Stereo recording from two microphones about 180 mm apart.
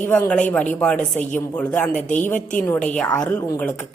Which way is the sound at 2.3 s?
45° left (ahead or behind).